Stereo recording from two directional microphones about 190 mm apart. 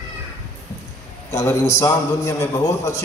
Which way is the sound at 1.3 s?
15° left (ahead or behind).